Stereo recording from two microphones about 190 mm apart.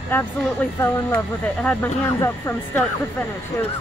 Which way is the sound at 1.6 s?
10° left (ahead or behind).